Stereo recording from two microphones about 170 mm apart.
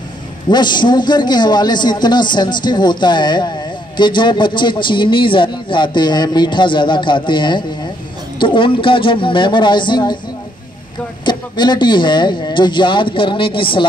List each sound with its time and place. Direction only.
0.5 s a man's voice: 25° left (ahead or behind)
11.2 s a man's voice: 25° left (ahead or behind)